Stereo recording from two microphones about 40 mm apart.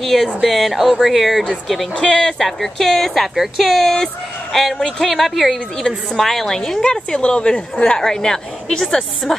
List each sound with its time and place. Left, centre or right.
0.0 s speech: centre
2.0 s a woman's voice: centre
2.3 s a woman's voice: centre